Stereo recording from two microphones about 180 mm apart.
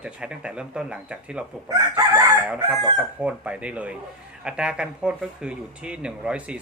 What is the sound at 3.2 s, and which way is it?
Speech, 5° right (ahead or behind).